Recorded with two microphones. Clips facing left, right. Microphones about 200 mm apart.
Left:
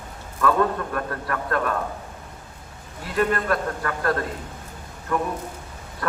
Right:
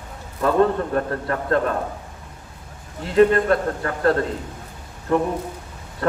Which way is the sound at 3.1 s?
25° right (ahead or behind).